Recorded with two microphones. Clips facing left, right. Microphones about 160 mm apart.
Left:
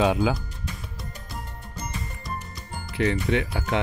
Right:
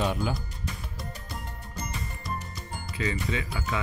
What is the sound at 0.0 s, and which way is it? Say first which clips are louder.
Speech: left 7 dB; 90° left.